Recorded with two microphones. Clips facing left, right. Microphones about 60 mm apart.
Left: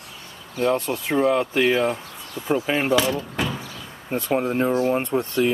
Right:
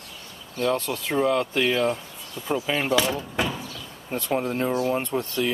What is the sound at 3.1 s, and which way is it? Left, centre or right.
Door, centre.